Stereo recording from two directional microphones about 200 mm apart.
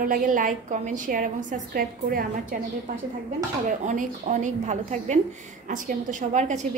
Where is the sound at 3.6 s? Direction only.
40° right (ahead or behind).